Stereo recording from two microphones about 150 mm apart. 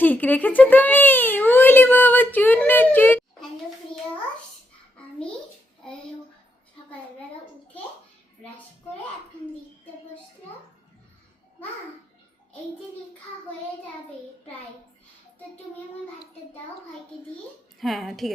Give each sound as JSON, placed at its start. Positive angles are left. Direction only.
{"t": 0.0, "sound": "a child's voice", "side_deg": 10}
{"t": 17.7, "sound": "a woman's voice", "side_deg": 0}